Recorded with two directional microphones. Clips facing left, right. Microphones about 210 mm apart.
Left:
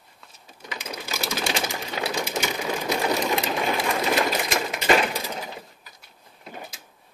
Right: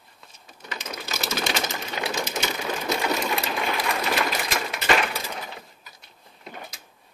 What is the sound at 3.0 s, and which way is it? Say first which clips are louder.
Sewing machine: left 2 dB; 25° left (ahead or behind).